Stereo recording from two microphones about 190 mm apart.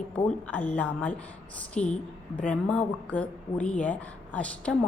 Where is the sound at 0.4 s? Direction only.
5° left (ahead or behind).